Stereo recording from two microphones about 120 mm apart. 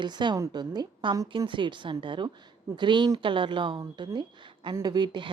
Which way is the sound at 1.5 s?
40° right (ahead or behind).